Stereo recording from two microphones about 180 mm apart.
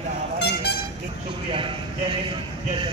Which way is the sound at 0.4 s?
70° left (ahead or behind).